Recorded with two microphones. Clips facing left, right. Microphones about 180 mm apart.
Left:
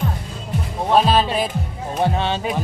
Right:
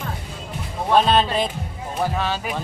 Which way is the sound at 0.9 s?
5° left (ahead or behind).